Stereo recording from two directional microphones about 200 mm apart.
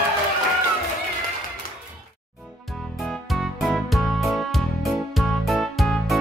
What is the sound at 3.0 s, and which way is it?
Music, centre (ahead or behind).